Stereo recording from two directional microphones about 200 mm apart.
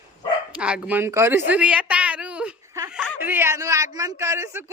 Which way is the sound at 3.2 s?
10° right (ahead or behind).